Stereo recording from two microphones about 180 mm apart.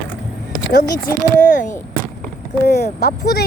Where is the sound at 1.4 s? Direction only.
45° left (ahead or behind).